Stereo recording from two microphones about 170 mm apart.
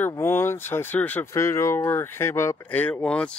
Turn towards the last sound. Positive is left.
turn(degrees=5)  # may be behind; listen again after turning